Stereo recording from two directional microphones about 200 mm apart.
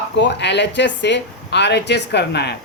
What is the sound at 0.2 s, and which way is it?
Speech, 60° left (ahead or behind).